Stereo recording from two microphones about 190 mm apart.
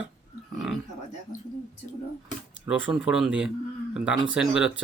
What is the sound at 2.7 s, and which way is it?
Speech, 5° right (ahead or behind).